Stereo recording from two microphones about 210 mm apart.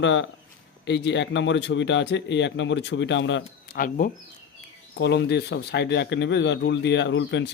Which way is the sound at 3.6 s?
45° left (ahead or behind).